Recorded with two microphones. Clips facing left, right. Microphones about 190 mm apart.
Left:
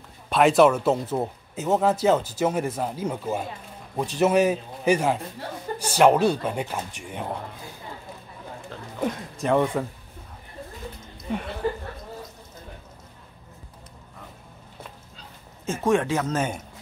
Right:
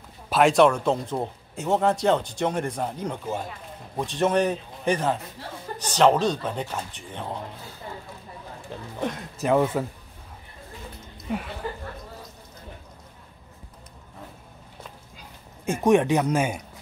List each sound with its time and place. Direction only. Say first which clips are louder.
0.3 s a man's voice: left 1 dB; centre (ahead or behind)
9.0 s speech: left 1 dB; 5° right (ahead or behind)
11.2 s speech: left 1 dB; 5° right (ahead or behind)
15.1 s speech: even; 15° right (ahead or behind)